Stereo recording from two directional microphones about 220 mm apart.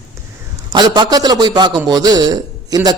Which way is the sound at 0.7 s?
20° right (ahead or behind).